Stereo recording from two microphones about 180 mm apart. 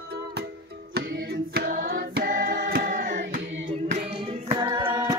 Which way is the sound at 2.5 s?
75° right (ahead or behind).